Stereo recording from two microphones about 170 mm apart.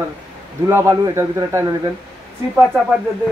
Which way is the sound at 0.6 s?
15° right (ahead or behind).